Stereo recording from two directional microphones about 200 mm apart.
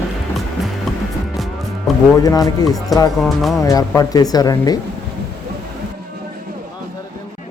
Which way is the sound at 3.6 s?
15° left (ahead or behind).